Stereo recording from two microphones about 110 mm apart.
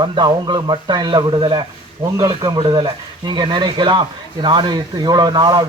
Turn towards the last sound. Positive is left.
turn(degrees=-40)  # may be behind; listen again after turning